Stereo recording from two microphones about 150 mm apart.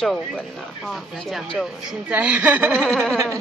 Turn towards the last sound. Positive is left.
turn(degrees=5)  # may be behind; listen again after turning